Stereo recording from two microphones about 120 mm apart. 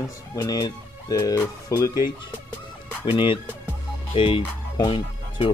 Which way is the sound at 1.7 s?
30° left (ahead or behind).